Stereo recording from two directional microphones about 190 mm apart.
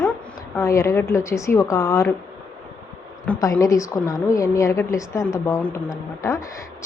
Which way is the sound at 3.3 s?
15° left (ahead or behind).